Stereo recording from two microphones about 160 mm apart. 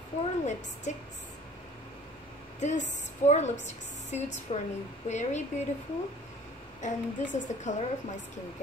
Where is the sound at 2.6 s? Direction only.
45° left (ahead or behind).